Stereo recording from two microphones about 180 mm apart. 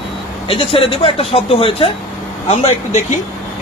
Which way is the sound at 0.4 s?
30° left (ahead or behind).